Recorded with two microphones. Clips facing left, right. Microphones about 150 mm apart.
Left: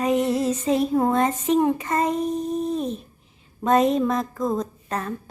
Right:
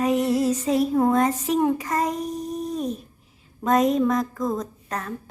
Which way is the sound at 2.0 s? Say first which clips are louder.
Left 4 dB; 25° left (ahead or behind).